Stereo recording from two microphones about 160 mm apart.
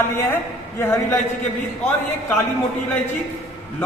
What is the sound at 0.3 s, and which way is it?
Speech, 15° left (ahead or behind).